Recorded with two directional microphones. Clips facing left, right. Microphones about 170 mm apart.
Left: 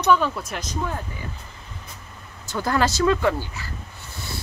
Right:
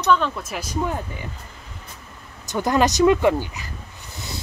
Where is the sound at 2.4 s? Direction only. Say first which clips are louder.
Right 3 dB; 20° right (ahead or behind).